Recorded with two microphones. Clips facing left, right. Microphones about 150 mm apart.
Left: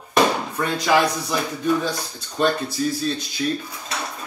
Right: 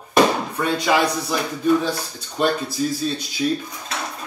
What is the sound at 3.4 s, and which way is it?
Speech, 15° right (ahead or behind).